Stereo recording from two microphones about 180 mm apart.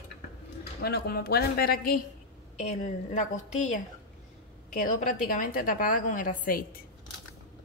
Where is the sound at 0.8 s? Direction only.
60° left (ahead or behind).